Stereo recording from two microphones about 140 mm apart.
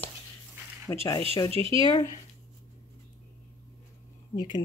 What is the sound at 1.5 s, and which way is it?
Speech, 40° right (ahead or behind).